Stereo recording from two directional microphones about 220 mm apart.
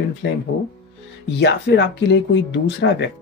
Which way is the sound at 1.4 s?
50° left (ahead or behind).